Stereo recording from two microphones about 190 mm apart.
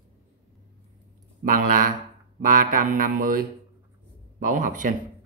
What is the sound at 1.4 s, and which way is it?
Mantra, 45° right (ahead or behind).